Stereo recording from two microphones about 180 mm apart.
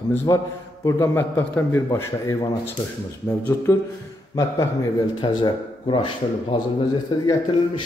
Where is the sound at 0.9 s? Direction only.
15° left (ahead or behind).